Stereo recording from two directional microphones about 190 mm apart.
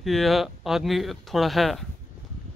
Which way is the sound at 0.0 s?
Centre (ahead or behind).